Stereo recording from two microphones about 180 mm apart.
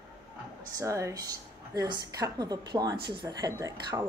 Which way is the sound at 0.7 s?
15° right (ahead or behind).